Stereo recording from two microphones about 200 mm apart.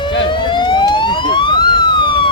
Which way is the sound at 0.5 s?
25° left (ahead or behind).